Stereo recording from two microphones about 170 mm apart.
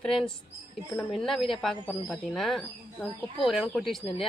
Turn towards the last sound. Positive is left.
turn(degrees=0)  # may be behind; listen again after turning